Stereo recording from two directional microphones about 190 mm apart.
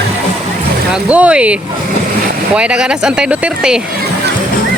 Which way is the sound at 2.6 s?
5° right (ahead or behind).